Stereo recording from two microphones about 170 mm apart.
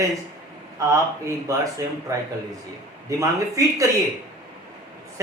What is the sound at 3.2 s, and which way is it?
Speech, 20° right (ahead or behind).